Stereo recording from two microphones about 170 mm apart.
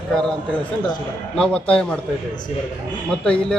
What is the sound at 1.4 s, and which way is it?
Speech, 5° left (ahead or behind).